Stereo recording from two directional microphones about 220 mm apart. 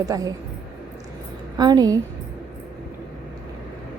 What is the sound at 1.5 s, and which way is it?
Speech, 20° right (ahead or behind).